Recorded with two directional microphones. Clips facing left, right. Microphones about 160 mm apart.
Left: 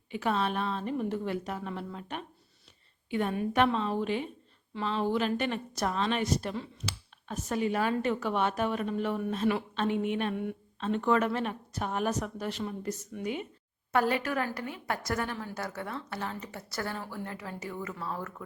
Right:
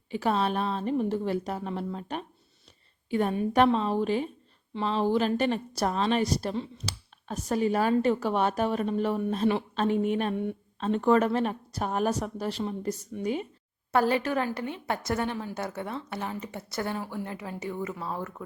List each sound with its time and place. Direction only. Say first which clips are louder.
0.1 s a woman's voice: right 3 dB; 35° right (ahead or behind); by 18.4 s 20° right (ahead or behind)